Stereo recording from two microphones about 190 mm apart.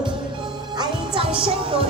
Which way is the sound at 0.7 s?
25° right (ahead or behind).